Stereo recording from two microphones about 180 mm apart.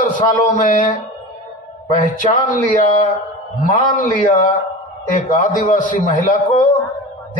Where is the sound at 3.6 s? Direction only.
45° left (ahead or behind).